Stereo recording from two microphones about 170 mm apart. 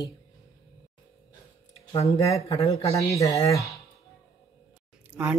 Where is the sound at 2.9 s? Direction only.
20° left (ahead or behind).